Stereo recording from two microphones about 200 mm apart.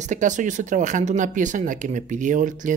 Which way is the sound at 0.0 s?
35° right (ahead or behind).